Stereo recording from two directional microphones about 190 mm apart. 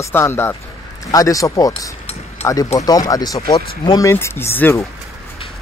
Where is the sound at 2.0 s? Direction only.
35° left (ahead or behind).